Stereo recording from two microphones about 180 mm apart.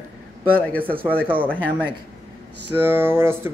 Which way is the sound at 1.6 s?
10° left (ahead or behind).